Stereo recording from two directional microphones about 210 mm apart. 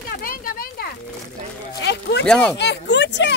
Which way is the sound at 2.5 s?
55° left (ahead or behind).